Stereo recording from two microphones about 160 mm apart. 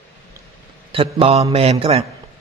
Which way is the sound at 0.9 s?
35° right (ahead or behind).